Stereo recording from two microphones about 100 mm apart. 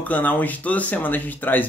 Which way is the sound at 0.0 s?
15° left (ahead or behind).